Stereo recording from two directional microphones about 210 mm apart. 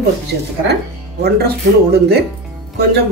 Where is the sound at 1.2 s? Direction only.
50° right (ahead or behind).